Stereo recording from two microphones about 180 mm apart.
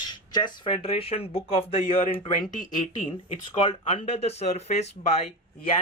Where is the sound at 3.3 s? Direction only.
30° left (ahead or behind).